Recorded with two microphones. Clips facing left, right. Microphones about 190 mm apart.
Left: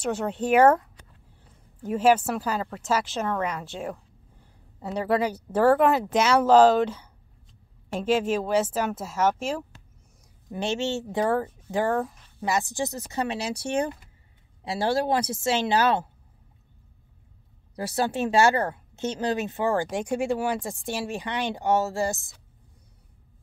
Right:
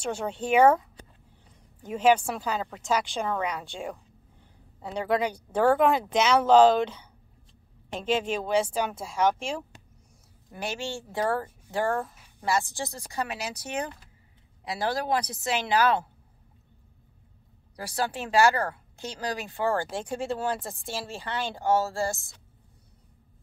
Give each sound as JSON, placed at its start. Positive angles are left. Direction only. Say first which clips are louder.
{"t": 0.3, "sound": "speech", "louder": "left 2 dB", "side_deg": 5}
{"t": 1.8, "sound": "a woman's voice", "louder": "left 2 dB", "side_deg": 5}
{"t": 10.5, "sound": "speech", "louder": "left 6 dB", "side_deg": 25}
{"t": 17.7, "sound": "speech", "louder": "left 5 dB", "side_deg": 25}